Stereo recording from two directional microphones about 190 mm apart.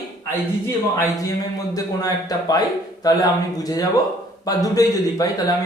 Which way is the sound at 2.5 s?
20° left (ahead or behind).